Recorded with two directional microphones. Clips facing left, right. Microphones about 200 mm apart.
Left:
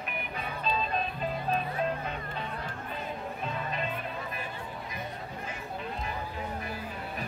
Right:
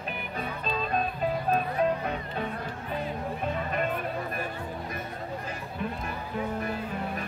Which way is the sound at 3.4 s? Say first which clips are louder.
Right 5 dB; 55° right (ahead or behind).